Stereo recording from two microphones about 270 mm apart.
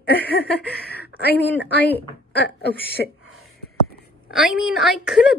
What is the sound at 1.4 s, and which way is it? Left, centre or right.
A woman's voice, left.